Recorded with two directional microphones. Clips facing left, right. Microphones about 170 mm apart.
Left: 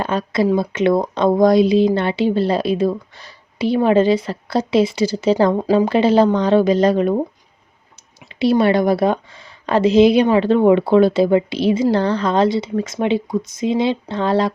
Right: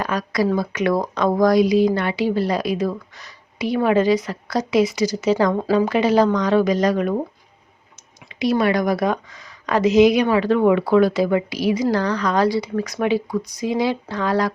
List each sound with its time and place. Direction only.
0.0 s speech: 25° left (ahead or behind)
8.3 s speech: 30° left (ahead or behind)